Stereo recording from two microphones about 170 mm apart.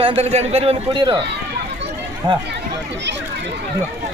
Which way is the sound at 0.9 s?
25° right (ahead or behind).